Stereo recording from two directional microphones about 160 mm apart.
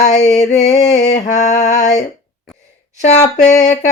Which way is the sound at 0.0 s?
45° left (ahead or behind).